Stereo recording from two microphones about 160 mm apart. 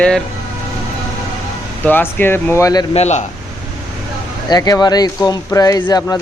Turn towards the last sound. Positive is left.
turn(degrees=25)  # may be behind; listen again after turning